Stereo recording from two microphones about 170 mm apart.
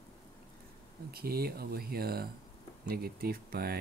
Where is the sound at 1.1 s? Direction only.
65° right (ahead or behind).